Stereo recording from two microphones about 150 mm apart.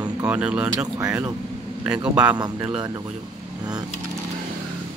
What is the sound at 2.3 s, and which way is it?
Speech, 25° right (ahead or behind).